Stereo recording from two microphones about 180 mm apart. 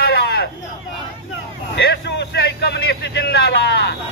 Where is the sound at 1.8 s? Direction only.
70° left (ahead or behind).